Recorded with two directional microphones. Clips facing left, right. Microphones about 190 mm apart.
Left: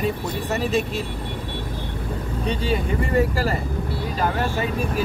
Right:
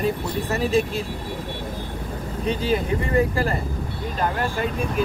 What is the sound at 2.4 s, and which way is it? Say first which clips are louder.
Speech: right 2 dB; centre (ahead or behind).